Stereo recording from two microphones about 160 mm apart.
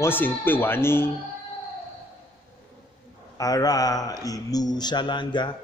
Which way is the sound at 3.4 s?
20° left (ahead or behind).